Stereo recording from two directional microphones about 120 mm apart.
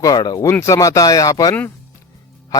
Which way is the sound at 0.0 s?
30° left (ahead or behind).